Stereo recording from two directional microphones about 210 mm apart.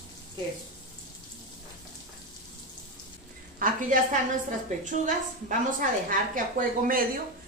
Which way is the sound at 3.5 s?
40° right (ahead or behind).